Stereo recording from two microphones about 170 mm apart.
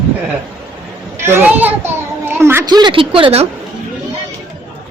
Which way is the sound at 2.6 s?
25° right (ahead or behind).